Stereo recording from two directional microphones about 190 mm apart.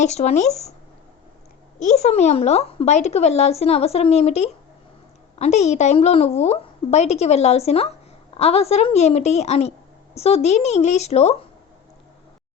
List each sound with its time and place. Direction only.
0.0 s speech: 35° left (ahead or behind)
1.8 s speech: 35° left (ahead or behind)